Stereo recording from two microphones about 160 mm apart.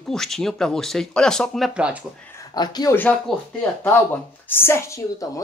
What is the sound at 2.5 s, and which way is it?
Speech, 25° left (ahead or behind).